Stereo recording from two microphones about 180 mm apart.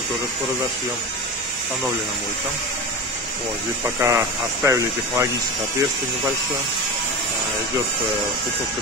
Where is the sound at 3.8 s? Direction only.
15° right (ahead or behind).